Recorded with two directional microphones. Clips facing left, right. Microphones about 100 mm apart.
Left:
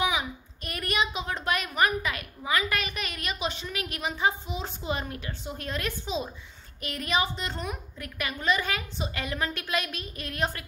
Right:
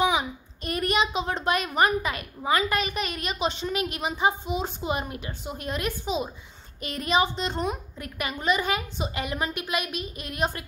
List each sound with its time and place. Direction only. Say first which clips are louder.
0.0 s a woman's voice: right 4 dB; 25° right (ahead or behind)